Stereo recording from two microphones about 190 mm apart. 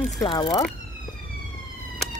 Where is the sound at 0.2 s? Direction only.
25° left (ahead or behind).